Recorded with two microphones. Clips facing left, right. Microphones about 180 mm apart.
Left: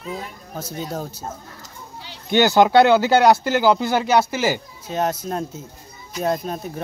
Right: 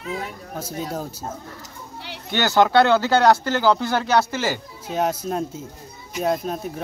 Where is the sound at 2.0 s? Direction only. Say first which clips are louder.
Right 5 dB; 65° right (ahead or behind).